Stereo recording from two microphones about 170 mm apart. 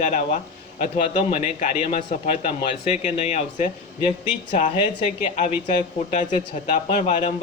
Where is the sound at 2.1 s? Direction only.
45° left (ahead or behind).